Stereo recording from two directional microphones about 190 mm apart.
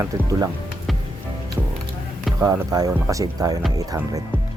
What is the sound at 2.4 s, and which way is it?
Speech, 20° right (ahead or behind).